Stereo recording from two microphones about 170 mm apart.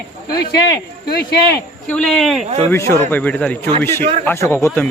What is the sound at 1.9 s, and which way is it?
Speech, 5° left (ahead or behind).